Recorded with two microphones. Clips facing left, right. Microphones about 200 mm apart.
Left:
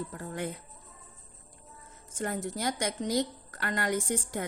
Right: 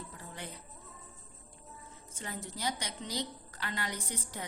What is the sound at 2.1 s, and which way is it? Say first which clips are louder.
A woman's voice: left 10 dB; 50° left (ahead or behind).